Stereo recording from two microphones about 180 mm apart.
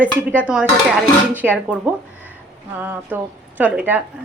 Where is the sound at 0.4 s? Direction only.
5° right (ahead or behind).